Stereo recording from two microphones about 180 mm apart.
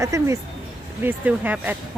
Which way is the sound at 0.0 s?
15° right (ahead or behind).